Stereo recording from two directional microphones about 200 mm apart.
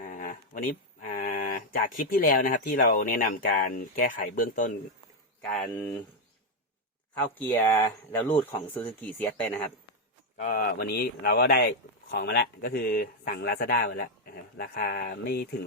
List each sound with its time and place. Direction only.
0.0 s speech: 45° left (ahead or behind)
5.4 s speech: 5° left (ahead or behind)
7.2 s speech: 10° left (ahead or behind)
10.3 s speech: 45° left (ahead or behind)